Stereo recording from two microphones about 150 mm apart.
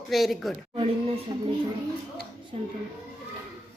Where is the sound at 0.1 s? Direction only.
Centre (ahead or behind).